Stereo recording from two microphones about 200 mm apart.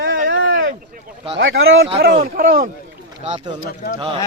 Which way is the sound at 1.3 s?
75° right (ahead or behind).